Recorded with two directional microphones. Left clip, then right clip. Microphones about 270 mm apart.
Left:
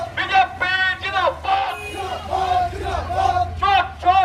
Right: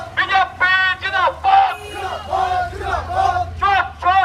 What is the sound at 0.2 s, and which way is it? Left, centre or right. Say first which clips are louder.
Synthetic singing: right 2 dB; centre.